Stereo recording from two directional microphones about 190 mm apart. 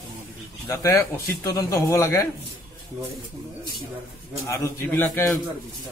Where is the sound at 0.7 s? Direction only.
15° left (ahead or behind).